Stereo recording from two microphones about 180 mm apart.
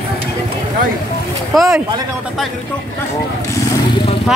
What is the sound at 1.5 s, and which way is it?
Speech, centre (ahead or behind).